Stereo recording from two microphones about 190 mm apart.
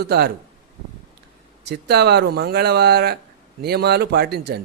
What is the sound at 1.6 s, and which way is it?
A man's voice, 60° right (ahead or behind).